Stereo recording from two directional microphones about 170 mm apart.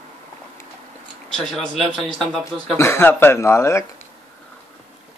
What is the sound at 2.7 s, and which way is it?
Speech, 15° left (ahead or behind).